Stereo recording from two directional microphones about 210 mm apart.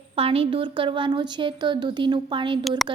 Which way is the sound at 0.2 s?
25° right (ahead or behind).